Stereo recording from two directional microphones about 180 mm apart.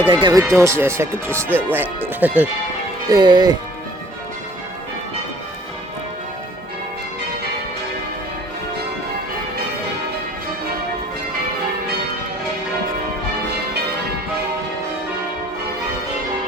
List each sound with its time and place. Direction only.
0.1 s speech: 25° right (ahead or behind); by 2.5 s 10° right (ahead or behind)
3.1 s speech: 25° right (ahead or behind)